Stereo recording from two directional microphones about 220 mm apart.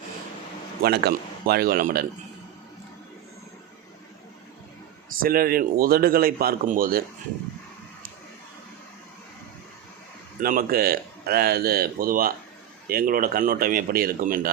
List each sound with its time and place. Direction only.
0.8 s speech: 45° right (ahead or behind)
5.2 s speech: 40° right (ahead or behind)
10.4 s speech: 40° right (ahead or behind)